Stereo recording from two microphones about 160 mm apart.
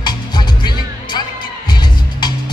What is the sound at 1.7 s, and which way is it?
Music, 25° left (ahead or behind).